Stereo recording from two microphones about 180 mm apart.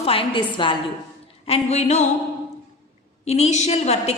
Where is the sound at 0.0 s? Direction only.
30° left (ahead or behind).